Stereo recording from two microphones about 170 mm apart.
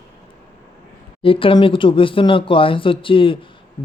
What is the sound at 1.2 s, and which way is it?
Speech, 30° left (ahead or behind).